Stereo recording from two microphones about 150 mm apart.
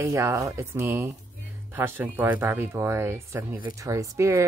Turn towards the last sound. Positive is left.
turn(degrees=-20)  # may be behind; listen again after turning